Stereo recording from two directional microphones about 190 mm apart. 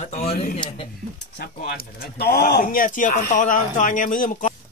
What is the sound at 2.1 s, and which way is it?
Speech, 55° left (ahead or behind).